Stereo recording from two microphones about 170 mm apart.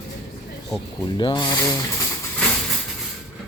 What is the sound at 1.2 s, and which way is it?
Speech, 25° left (ahead or behind).